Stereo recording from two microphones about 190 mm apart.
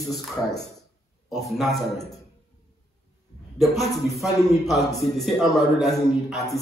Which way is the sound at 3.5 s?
Centre (ahead or behind).